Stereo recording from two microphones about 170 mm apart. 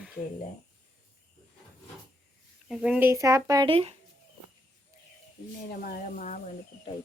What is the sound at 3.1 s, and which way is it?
Speech, 15° right (ahead or behind).